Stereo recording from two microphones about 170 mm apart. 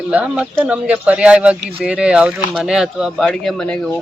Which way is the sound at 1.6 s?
65° right (ahead or behind).